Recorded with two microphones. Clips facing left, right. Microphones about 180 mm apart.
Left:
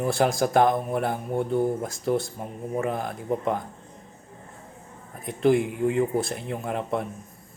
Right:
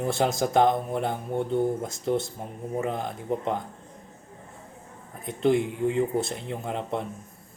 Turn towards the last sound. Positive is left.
turn(degrees=-25)  # may be behind; listen again after turning